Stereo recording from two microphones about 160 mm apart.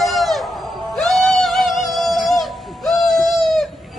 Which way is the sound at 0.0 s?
Centre (ahead or behind).